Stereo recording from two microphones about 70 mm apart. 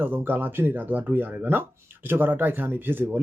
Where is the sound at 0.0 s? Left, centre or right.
Right.